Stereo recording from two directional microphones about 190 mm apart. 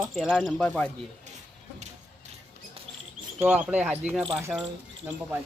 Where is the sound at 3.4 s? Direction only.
5° right (ahead or behind).